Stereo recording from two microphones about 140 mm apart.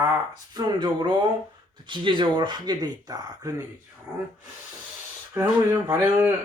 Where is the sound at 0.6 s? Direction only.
30° right (ahead or behind).